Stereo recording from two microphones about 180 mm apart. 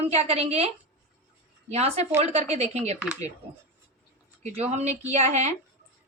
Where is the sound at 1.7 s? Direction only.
35° right (ahead or behind).